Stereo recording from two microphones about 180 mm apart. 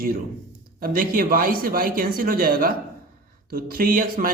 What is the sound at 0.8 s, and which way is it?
Speech, 50° right (ahead or behind).